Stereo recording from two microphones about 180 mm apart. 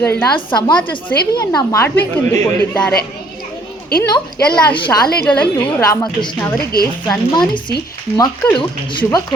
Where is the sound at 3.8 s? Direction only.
60° left (ahead or behind).